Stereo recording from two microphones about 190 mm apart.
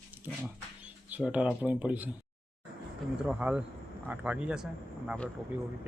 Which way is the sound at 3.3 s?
5° right (ahead or behind).